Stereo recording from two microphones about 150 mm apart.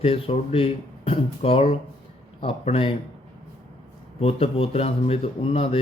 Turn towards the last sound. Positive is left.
turn(degrees=40)  # may be behind; listen again after turning